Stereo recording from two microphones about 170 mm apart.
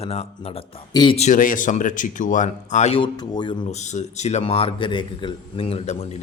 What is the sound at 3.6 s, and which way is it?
A man's voice, 40° left (ahead or behind).